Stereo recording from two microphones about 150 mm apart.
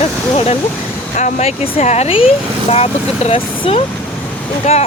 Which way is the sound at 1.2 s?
50° left (ahead or behind).